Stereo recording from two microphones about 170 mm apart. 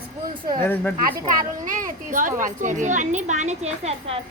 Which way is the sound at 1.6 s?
50° right (ahead or behind).